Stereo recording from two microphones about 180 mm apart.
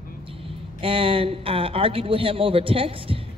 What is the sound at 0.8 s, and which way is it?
A woman's voice, 30° right (ahead or behind).